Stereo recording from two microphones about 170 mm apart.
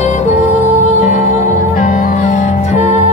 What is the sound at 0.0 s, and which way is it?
Music, 40° left (ahead or behind).